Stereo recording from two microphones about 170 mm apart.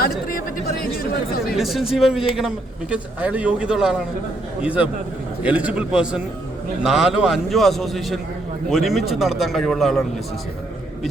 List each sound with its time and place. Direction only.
0.3 s chatter: 60° left (ahead or behind)
1.5 s a man's voice: centre (ahead or behind)